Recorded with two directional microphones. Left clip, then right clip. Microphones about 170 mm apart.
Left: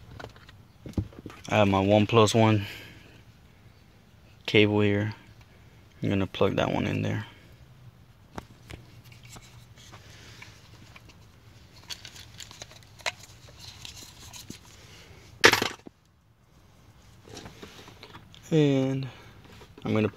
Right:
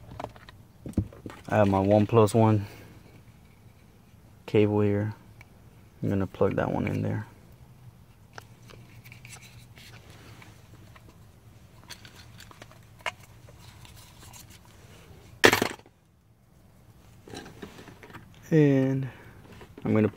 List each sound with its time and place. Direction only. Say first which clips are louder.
1.4 s speech: even; 5° right (ahead or behind)
4.5 s speech: left 2 dB; centre (ahead or behind)
15.4 s a sound: left 1 dB; 65° right (ahead or behind)
18.0 s typing: even; 5° right (ahead or behind)
19.8 s speech: right 2 dB; 10° right (ahead or behind)